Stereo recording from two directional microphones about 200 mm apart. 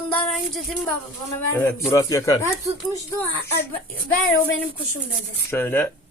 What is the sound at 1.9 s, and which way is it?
Speech, 15° left (ahead or behind).